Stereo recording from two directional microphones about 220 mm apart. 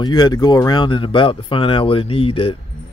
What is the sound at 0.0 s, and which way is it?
Speech, 20° left (ahead or behind).